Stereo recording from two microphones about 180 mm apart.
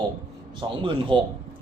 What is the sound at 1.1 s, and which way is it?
Speech, 5° left (ahead or behind).